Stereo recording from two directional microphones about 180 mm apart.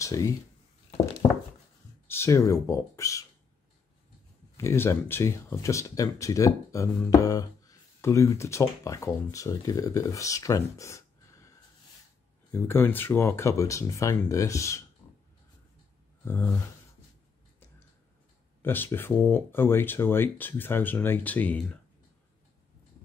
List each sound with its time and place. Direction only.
0.0 s speech: 15° left (ahead or behind)
2.0 s speech: 15° left (ahead or behind)
4.6 s speech: 15° left (ahead or behind)
12.5 s speech: 10° left (ahead or behind)
15.0 s a sound: 10° left (ahead or behind)
18.6 s speech: 10° left (ahead or behind)